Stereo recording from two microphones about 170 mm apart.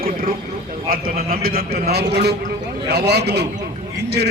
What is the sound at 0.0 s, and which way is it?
Vehicle, 55° right (ahead or behind).